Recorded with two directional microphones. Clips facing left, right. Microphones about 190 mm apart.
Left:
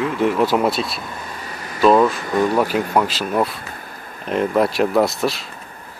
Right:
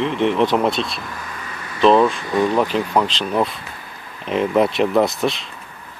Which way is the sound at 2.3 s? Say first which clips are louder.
Even; 45° left (ahead or behind).